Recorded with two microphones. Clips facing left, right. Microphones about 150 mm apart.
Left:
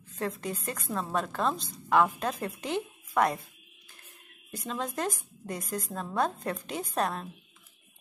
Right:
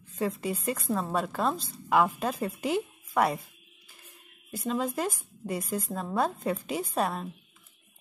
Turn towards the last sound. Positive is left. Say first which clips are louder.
# right 1 dB
turn(degrees=-5)  # may be behind; listen again after turning